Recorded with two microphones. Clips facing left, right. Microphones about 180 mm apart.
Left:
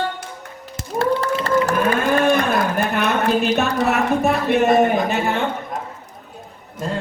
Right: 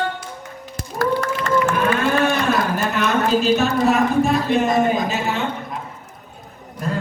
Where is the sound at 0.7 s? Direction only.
25° left (ahead or behind); by 5.4 s 60° left (ahead or behind).